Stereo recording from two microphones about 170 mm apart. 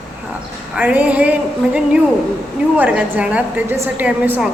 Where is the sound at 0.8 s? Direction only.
10° right (ahead or behind).